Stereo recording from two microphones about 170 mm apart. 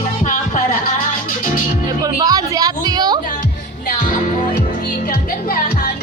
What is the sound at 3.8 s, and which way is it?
Music, 50° left (ahead or behind).